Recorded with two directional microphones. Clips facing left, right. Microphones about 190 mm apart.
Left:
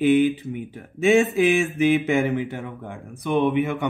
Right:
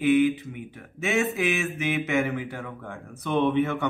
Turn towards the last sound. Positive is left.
turn(degrees=15)  # may be behind; listen again after turning